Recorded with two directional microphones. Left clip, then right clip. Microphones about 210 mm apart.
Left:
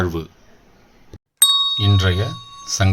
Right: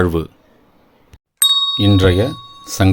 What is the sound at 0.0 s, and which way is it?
Speech, 40° right (ahead or behind).